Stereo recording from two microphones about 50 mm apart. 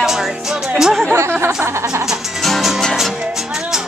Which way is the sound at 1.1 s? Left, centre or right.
Right.